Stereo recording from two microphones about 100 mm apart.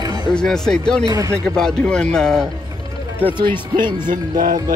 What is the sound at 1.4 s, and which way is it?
A man's voice, 5° left (ahead or behind).